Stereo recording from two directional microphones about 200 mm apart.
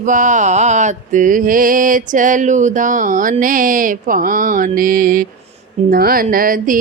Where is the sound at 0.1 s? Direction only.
40° right (ahead or behind).